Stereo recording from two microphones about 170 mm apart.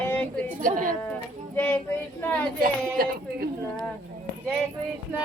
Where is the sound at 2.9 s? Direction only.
60° right (ahead or behind).